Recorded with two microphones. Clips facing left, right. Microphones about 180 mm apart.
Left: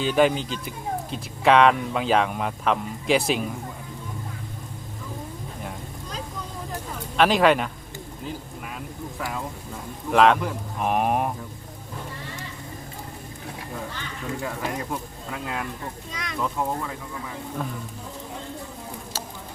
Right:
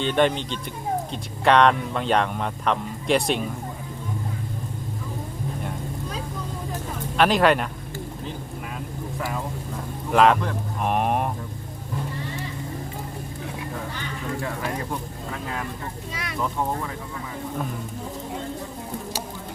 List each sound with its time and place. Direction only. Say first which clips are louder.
0.0 s speech: left 1 dB; 5° left (ahead or behind)
7.2 s speech: even; centre (ahead or behind)
10.1 s speech: even; centre (ahead or behind)
16.1 s speech: right 1 dB; 5° right (ahead or behind)